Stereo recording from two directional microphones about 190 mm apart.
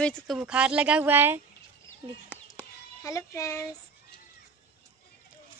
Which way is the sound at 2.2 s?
15° left (ahead or behind).